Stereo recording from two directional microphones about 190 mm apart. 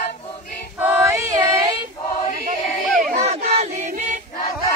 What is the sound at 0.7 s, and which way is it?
Female singing, 10° right (ahead or behind).